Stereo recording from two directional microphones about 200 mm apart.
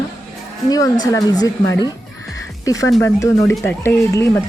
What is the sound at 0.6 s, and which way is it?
Speech, 20° left (ahead or behind).